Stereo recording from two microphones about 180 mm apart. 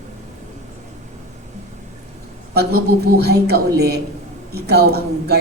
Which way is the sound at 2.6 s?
60° right (ahead or behind).